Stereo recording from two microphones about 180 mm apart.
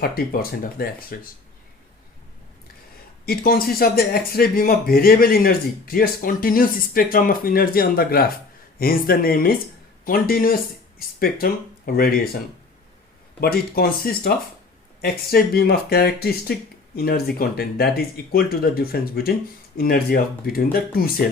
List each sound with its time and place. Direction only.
0.0 s speech: 55° left (ahead or behind)
3.2 s speech: 55° left (ahead or behind)
13.4 s speech: 60° left (ahead or behind)